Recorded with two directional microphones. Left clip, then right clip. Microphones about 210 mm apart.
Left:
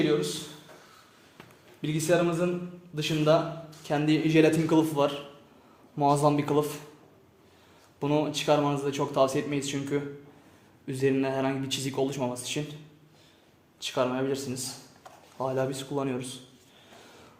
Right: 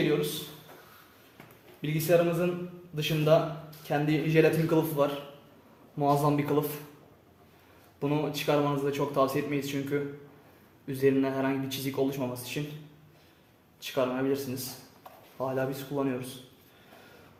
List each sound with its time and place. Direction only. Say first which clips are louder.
1.8 s a man's voice: even; 25° left (ahead or behind)
8.0 s a man's voice: left 3 dB; 30° left (ahead or behind)
13.7 s a man's voice: left 1 dB; 35° left (ahead or behind)